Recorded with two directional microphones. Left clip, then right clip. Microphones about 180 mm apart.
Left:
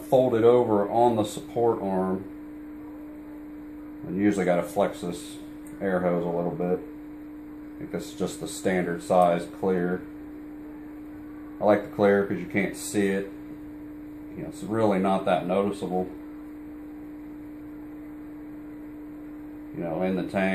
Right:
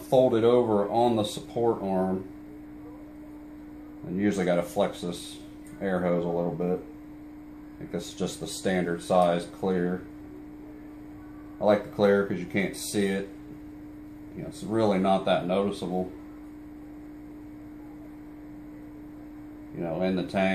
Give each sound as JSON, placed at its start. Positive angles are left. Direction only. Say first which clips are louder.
{"t": 0.1, "sound": "speech", "louder": "left 2 dB", "side_deg": 10}
{"t": 4.2, "sound": "speech", "louder": "left 2 dB", "side_deg": 15}
{"t": 7.9, "sound": "speech", "louder": "left 1 dB", "side_deg": 15}
{"t": 11.6, "sound": "speech", "louder": "left 1 dB", "side_deg": 15}
{"t": 14.7, "sound": "speech", "louder": "even", "side_deg": 10}
{"t": 19.8, "sound": "speech", "louder": "left 1 dB", "side_deg": 10}